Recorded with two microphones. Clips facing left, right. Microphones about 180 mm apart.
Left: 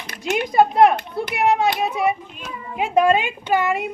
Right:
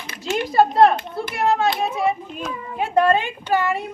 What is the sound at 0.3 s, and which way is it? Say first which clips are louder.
A woman's voice: left 1 dB; 15° left (ahead or behind).